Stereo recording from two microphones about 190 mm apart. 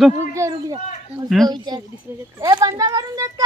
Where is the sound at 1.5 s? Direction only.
20° right (ahead or behind).